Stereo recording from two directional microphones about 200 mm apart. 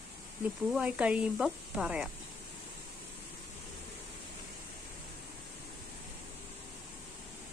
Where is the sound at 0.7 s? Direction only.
5° right (ahead or behind).